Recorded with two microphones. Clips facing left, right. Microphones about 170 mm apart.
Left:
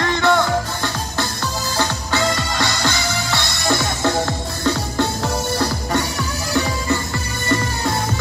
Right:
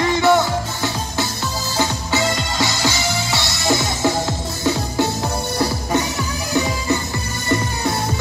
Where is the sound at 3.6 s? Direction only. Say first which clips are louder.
Right 1 dB; 20° right (ahead or behind).